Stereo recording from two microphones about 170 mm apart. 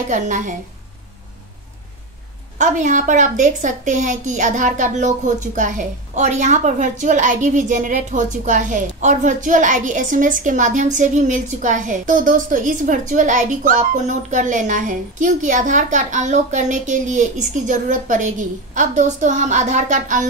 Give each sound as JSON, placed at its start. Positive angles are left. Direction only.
{"t": 0.1, "sound": "a woman's voice", "side_deg": -50}
{"t": 2.6, "sound": "a woman's voice", "side_deg": -45}